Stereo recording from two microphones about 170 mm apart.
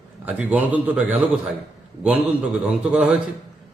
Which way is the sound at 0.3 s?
10° right (ahead or behind).